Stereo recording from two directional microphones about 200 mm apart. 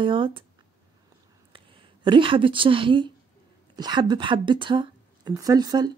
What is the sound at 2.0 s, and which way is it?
A woman's voice, 25° right (ahead or behind).